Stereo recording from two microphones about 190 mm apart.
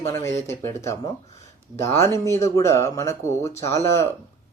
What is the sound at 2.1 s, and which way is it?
Speech, 15° left (ahead or behind).